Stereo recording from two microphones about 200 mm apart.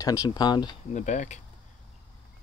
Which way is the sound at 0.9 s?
35° left (ahead or behind).